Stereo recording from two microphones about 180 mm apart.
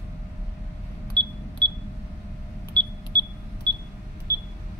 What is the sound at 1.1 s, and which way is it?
Camera, 25° right (ahead or behind).